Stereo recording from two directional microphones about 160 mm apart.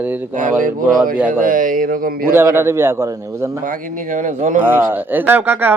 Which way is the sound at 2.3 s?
15° right (ahead or behind).